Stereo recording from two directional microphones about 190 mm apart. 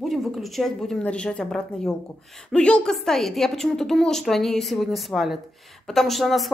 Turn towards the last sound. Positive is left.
turn(degrees=0)  # may be behind; listen again after turning